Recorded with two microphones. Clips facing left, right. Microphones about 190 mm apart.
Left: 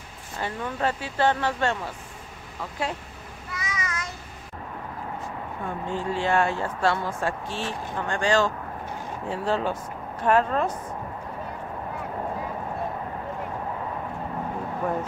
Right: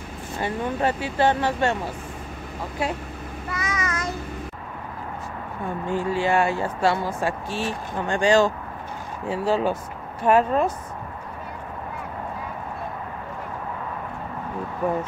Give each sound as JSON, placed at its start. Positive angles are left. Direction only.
{"t": 0.4, "sound": "speech", "side_deg": -15}
{"t": 3.4, "sound": "child singing", "side_deg": -55}
{"t": 5.9, "sound": "speech", "side_deg": -10}